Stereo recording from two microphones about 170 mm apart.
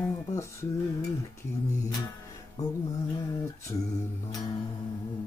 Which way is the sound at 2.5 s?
20° left (ahead or behind).